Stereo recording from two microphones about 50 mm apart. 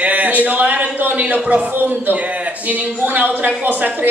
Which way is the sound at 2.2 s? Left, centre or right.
Right.